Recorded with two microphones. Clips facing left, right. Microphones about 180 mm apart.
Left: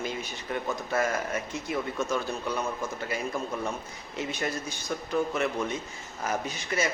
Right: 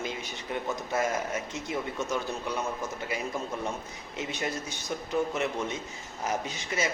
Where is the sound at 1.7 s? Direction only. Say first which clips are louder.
Left 2 dB; 20° right (ahead or behind).